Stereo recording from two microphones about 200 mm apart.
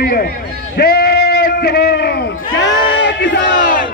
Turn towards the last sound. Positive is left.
turn(degrees=65)  # may be behind; listen again after turning